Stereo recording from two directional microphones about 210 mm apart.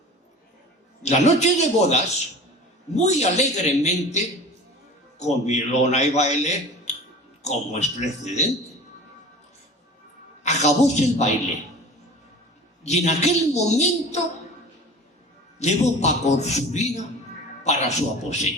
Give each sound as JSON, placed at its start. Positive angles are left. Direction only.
{"t": 1.0, "sound": "a man's voice", "side_deg": 35}
{"t": 5.2, "sound": "a man's voice", "side_deg": 30}
{"t": 10.4, "sound": "a man's voice", "side_deg": 35}
{"t": 12.8, "sound": "a man's voice", "side_deg": 30}
{"t": 15.5, "sound": "a man's voice", "side_deg": 30}